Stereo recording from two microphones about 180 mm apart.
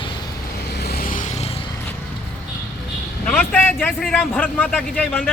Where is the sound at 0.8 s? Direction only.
60° left (ahead or behind).